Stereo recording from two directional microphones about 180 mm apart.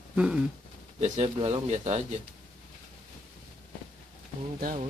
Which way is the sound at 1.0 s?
40° right (ahead or behind).